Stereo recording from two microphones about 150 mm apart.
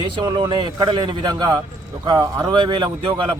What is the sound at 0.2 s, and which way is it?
A man's voice, 30° right (ahead or behind).